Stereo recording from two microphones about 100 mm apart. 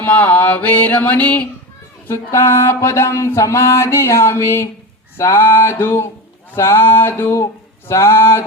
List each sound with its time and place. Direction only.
0.0 s mantra: 15° left (ahead or behind)
2.0 s music: 25° left (ahead or behind)